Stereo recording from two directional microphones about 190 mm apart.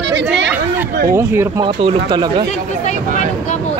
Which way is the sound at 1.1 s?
15° right (ahead or behind).